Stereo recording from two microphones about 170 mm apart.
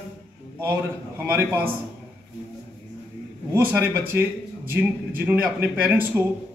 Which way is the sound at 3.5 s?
10° right (ahead or behind).